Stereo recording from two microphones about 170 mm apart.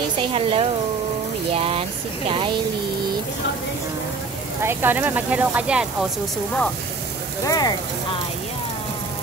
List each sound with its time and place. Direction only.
0.3 s speech: 35° right (ahead or behind)
1.5 s a sound: 35° right (ahead or behind)
4.6 s speech: 10° right (ahead or behind)
7.4 s speech: 20° left (ahead or behind)